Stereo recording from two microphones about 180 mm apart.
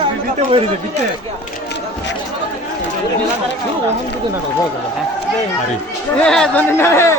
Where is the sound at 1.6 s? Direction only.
75° left (ahead or behind).